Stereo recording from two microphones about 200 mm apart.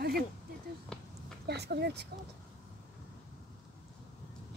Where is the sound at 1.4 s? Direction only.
55° right (ahead or behind).